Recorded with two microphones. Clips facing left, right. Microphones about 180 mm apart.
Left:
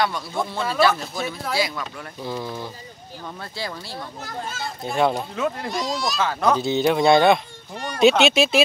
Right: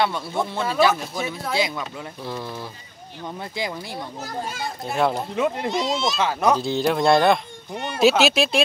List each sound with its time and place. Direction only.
0.0 s a man's voice: 20° right (ahead or behind)
1.8 s speech: centre (ahead or behind)
3.3 s a man's voice: 15° right (ahead or behind)
4.8 s speech: centre (ahead or behind)
5.3 s speech: 20° right (ahead or behind)
6.5 s speech: centre (ahead or behind)
7.7 s speech: 20° right (ahead or behind)
8.0 s speech: centre (ahead or behind)